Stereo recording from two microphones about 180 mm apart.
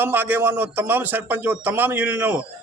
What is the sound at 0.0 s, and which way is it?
Speech, 10° right (ahead or behind).